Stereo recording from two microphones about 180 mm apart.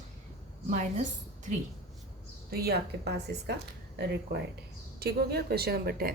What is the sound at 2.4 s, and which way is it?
A woman's voice, 60° right (ahead or behind).